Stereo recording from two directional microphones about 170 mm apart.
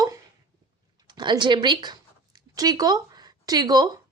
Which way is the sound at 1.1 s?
25° right (ahead or behind).